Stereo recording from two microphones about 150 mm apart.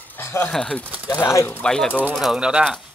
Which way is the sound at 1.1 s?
20° left (ahead or behind).